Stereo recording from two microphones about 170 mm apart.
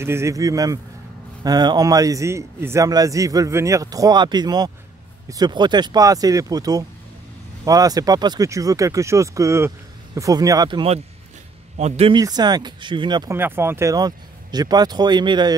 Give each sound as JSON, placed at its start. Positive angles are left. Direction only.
{"t": 0.0, "sound": "a man's voice", "side_deg": -15}
{"t": 11.8, "sound": "a man's voice", "side_deg": -35}
{"t": 12.2, "sound": "a man's voice", "side_deg": -25}
{"t": 13.3, "sound": "a man's voice", "side_deg": -15}